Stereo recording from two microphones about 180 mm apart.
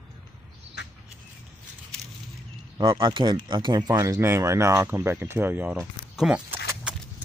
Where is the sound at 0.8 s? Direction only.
75° left (ahead or behind).